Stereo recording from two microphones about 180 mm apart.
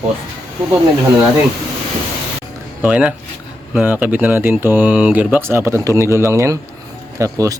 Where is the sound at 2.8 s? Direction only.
5° right (ahead or behind).